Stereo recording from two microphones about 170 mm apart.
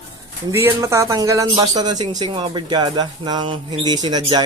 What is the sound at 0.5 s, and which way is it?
Speech, 15° right (ahead or behind).